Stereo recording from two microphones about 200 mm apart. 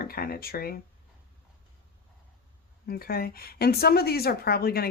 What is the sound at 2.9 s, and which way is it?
Speech, 50° left (ahead or behind).